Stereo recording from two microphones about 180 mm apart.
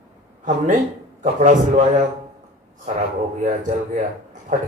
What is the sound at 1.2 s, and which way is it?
Speech, 45° right (ahead or behind).